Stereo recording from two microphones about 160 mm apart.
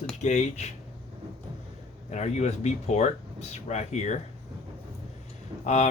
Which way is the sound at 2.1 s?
45° left (ahead or behind).